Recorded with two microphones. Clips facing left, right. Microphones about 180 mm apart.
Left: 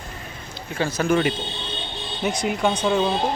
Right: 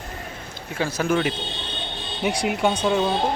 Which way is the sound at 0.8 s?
10° right (ahead or behind).